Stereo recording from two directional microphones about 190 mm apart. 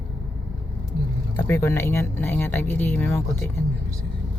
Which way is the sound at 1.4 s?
15° left (ahead or behind).